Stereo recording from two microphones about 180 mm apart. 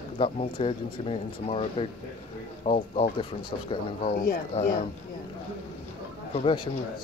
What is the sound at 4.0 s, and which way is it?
Speech, 55° left (ahead or behind).